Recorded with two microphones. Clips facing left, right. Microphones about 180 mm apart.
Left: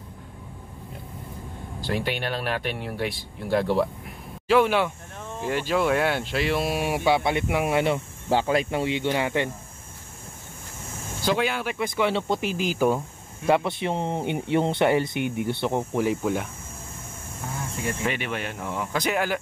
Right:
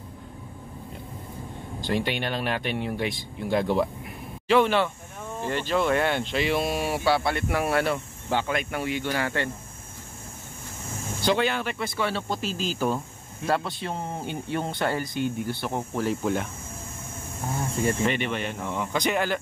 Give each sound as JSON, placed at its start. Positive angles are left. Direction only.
{"t": 1.8, "sound": "speech", "side_deg": 5}
{"t": 8.3, "sound": "speech", "side_deg": 35}
{"t": 11.2, "sound": "speech", "side_deg": 5}
{"t": 18.0, "sound": "speech", "side_deg": 5}